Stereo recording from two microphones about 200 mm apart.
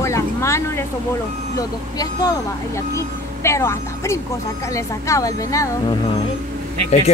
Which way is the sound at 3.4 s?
15° left (ahead or behind).